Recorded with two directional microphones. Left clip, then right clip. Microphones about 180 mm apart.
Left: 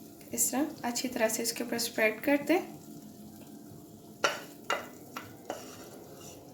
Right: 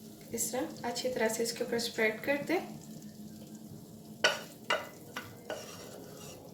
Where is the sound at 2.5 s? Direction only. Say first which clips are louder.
Left 3 dB; 50° left (ahead or behind).